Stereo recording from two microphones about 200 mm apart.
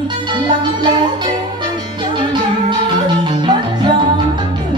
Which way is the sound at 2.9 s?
20° right (ahead or behind).